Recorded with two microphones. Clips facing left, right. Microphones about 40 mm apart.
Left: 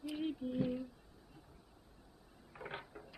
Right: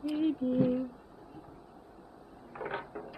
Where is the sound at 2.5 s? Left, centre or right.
Right.